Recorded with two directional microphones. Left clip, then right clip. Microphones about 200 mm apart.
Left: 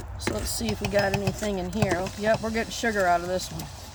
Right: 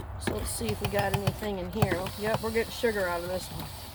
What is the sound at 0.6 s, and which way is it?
Speech, 55° left (ahead or behind).